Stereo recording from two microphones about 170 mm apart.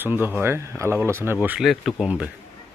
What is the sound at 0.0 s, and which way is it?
Speech, 10° right (ahead or behind).